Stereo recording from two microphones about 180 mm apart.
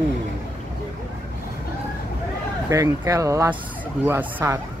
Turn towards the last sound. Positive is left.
turn(degrees=-15)  # may be behind; listen again after turning